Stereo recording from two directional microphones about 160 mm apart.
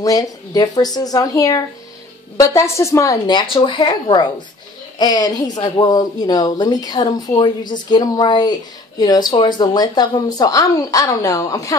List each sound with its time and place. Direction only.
0.0 s speech: 20° left (ahead or behind)